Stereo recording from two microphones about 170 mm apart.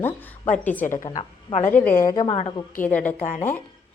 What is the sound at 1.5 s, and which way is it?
Speech, 45° left (ahead or behind).